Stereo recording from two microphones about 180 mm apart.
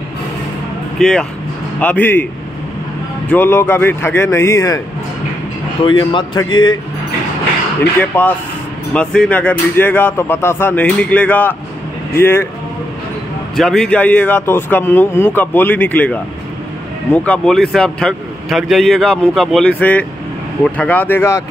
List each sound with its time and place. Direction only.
0.9 s speech: 5° left (ahead or behind)
3.3 s speech: 10° left (ahead or behind)
5.9 s a man's voice: 25° left (ahead or behind)
8.0 s speech: 10° left (ahead or behind)
13.6 s speech: 5° left (ahead or behind)